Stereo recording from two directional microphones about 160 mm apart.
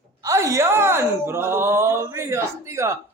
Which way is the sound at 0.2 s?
20° right (ahead or behind).